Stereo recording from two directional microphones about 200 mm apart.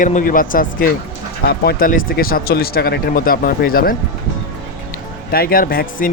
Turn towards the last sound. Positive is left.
turn(degrees=45)  # may be behind; listen again after turning